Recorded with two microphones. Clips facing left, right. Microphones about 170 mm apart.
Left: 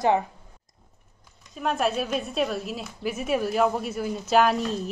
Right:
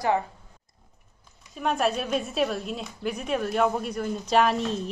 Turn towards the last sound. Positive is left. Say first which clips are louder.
# left 1 dB
turn(degrees=0)  # may be behind; listen again after turning